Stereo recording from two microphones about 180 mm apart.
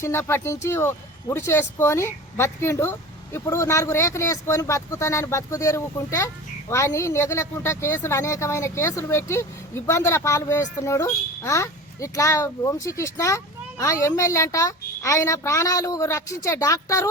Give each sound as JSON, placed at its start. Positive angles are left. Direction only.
{"t": 0.0, "sound": "speech", "side_deg": 15}